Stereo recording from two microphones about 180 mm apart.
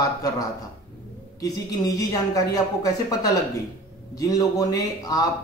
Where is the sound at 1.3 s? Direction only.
20° left (ahead or behind).